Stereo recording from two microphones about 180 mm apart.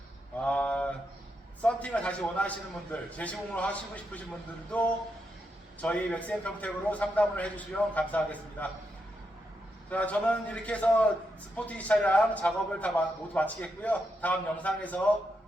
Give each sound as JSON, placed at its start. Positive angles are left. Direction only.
{"t": 0.3, "sound": "a sound", "side_deg": 5}
{"t": 1.6, "sound": "a man's voice", "side_deg": 5}
{"t": 5.8, "sound": "a man's voice", "side_deg": 5}
{"t": 9.9, "sound": "a man's voice", "side_deg": 5}